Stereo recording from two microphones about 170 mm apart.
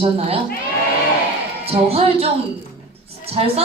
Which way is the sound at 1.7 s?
35° right (ahead or behind).